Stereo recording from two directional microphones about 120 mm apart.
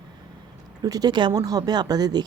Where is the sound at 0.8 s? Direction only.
30° right (ahead or behind).